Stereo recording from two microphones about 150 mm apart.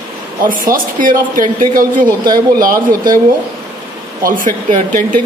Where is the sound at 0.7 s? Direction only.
65° right (ahead or behind).